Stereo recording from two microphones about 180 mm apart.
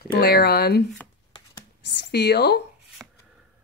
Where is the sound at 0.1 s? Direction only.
60° left (ahead or behind).